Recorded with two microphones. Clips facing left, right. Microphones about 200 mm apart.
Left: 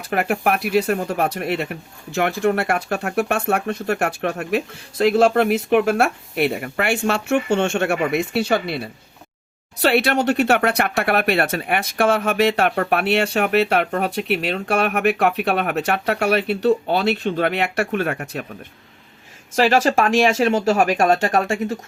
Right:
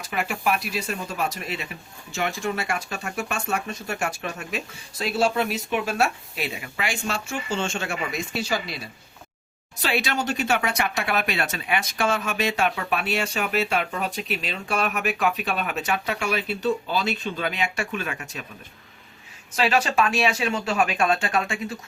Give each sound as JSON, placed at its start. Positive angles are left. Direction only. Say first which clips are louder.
{"t": 0.0, "sound": "speech", "louder": "left 6 dB", "side_deg": 60}
{"t": 19.5, "sound": "speech", "louder": "left 6 dB", "side_deg": 45}